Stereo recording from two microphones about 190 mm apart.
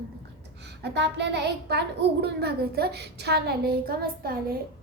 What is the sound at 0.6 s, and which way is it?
A child's voice, 65° right (ahead or behind).